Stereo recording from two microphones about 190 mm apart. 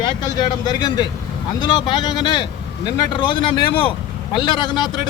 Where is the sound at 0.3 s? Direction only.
20° left (ahead or behind).